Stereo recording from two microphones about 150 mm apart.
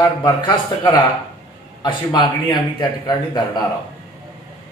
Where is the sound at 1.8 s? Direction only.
30° left (ahead or behind).